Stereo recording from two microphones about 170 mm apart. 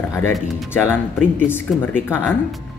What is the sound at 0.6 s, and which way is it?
Speech, 10° left (ahead or behind).